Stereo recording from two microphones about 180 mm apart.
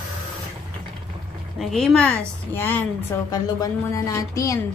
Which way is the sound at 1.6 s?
5° left (ahead or behind).